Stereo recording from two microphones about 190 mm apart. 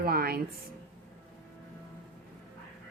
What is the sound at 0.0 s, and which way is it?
Speech, 50° right (ahead or behind).